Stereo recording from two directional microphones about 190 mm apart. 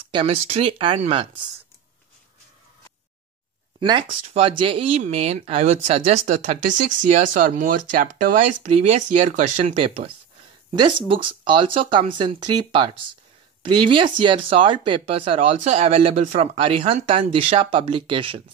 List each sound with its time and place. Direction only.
0.1 s speech: 30° right (ahead or behind)
3.8 s speech: 25° right (ahead or behind)